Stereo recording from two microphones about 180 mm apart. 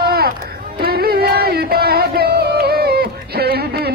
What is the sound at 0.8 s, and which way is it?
Music, 60° right (ahead or behind).